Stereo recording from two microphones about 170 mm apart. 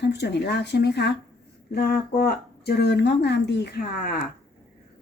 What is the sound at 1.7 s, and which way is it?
Speech, 65° left (ahead or behind).